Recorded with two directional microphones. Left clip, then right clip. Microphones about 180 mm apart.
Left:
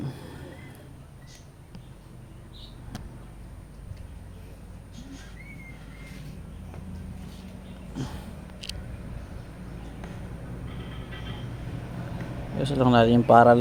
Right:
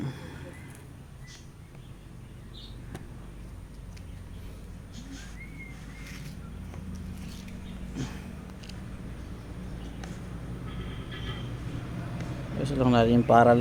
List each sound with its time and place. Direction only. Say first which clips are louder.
0.0 s a sound: even; 5° left (ahead or behind)
8.6 s vehicle: left 12 dB; 50° left (ahead or behind)
12.5 s speech: left 4 dB; 20° left (ahead or behind)